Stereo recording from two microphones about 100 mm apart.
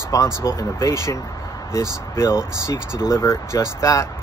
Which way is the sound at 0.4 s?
25° left (ahead or behind).